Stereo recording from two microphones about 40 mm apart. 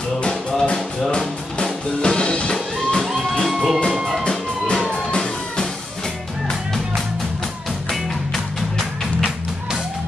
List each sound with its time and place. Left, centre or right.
0.3 s music: centre
3.4 s music: centre